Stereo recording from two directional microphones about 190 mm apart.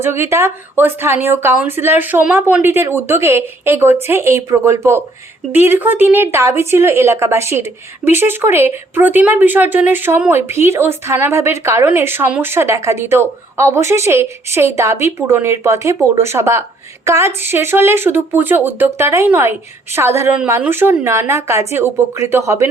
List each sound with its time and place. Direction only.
0.0 s speech: 15° right (ahead or behind)